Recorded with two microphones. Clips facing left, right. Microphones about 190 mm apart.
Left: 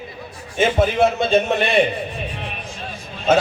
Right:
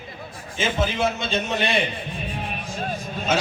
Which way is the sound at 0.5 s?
55° left (ahead or behind).